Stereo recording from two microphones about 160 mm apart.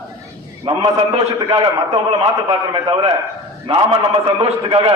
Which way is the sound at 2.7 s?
25° right (ahead or behind).